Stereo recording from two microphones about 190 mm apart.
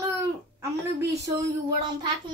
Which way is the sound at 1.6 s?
25° right (ahead or behind).